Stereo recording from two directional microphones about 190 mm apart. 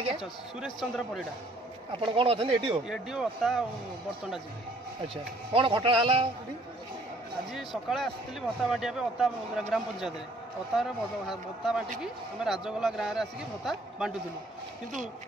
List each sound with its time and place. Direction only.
0.2 s speech: centre (ahead or behind)
1.9 s speech: 30° right (ahead or behind)
2.9 s speech: centre (ahead or behind)
5.0 s speech: 30° right (ahead or behind)
7.5 s speech: centre (ahead or behind)